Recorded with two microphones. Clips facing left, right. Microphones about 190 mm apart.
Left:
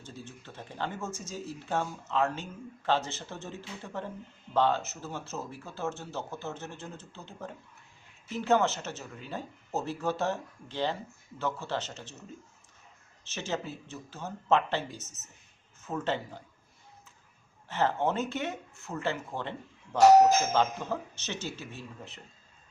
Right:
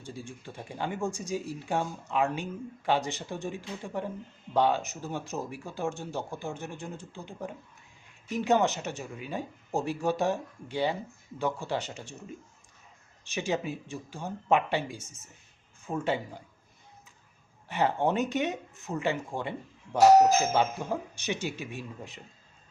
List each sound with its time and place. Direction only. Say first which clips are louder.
0.0 s speech: right 4 dB; 10° right (ahead or behind)
13.2 s speech: right 4 dB; 15° right (ahead or behind)
17.7 s speech: right 2 dB; 15° right (ahead or behind)